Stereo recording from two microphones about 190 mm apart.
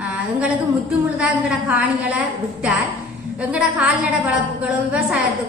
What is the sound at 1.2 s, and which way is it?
A woman's voice, 5° right (ahead or behind).